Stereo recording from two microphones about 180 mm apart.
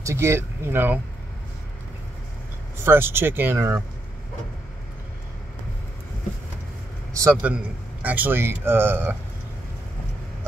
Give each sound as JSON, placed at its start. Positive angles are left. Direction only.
{"t": 0.0, "sound": "speech", "side_deg": -15}
{"t": 2.8, "sound": "speech", "side_deg": -15}
{"t": 7.2, "sound": "speech", "side_deg": -15}